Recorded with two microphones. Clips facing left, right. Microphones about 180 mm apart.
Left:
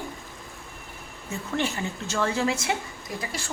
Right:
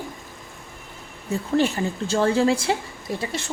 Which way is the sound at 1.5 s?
35° right (ahead or behind).